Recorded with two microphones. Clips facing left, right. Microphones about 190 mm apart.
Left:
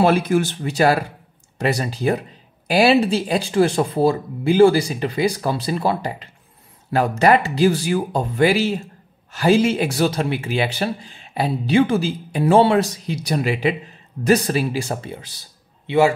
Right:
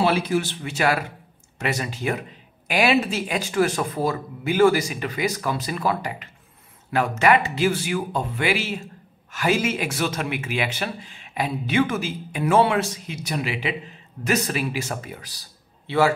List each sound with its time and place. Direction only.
0.0 s speech: 50° left (ahead or behind); by 15.4 s 25° left (ahead or behind)